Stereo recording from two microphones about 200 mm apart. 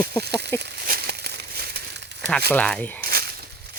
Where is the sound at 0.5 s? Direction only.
55° right (ahead or behind).